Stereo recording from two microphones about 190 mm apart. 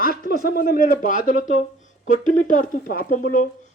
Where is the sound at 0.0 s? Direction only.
50° left (ahead or behind).